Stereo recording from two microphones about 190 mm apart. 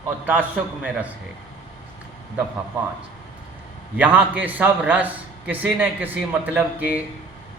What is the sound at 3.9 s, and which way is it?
A man's voice, 10° right (ahead or behind).